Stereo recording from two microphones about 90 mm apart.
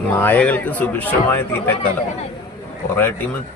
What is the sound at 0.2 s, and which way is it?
A man's voice, 20° left (ahead or behind).